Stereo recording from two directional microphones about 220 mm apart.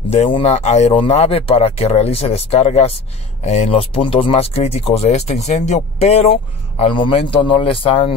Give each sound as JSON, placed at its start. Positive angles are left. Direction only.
{"t": 0.1, "sound": "speech", "side_deg": 30}